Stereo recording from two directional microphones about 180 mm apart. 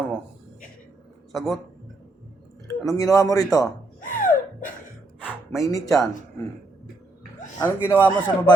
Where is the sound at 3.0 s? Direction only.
20° left (ahead or behind).